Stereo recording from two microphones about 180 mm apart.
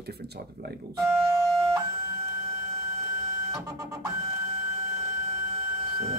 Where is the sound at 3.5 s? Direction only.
20° right (ahead or behind).